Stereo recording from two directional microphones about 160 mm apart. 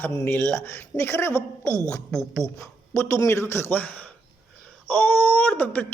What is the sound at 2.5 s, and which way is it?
A man's voice, 20° left (ahead or behind).